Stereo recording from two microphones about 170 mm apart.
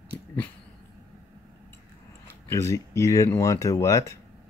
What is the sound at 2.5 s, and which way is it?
Speech, 20° left (ahead or behind).